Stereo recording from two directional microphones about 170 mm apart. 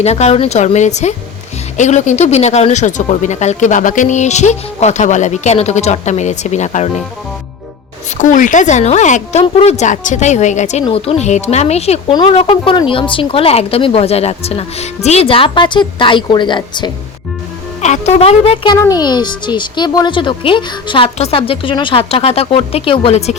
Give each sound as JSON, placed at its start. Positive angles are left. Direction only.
{"t": 0.0, "sound": "a child's voice", "side_deg": 40}
{"t": 8.2, "sound": "a child's voice", "side_deg": 50}
{"t": 17.7, "sound": "a child's voice", "side_deg": 40}